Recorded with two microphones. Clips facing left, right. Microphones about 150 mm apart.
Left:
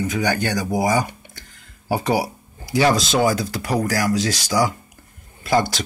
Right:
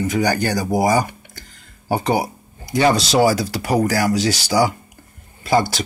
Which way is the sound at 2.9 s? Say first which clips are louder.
Right 2 dB; 75° right (ahead or behind).